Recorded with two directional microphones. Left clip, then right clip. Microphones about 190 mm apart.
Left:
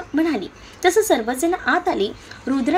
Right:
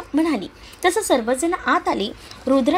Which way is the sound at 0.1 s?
45° right (ahead or behind).